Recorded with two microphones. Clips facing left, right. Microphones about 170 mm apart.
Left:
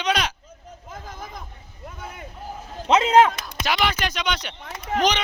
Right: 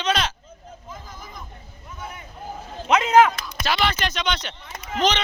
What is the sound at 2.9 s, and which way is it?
Speech, 30° left (ahead or behind).